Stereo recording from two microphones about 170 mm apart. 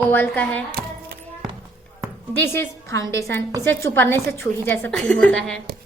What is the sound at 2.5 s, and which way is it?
A woman's voice, 15° left (ahead or behind).